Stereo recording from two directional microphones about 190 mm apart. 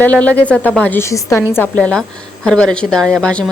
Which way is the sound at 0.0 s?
5° left (ahead or behind).